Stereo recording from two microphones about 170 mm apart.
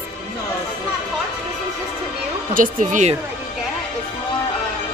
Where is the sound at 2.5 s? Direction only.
50° right (ahead or behind).